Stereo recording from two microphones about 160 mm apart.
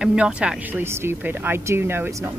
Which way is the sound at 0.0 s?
5° right (ahead or behind).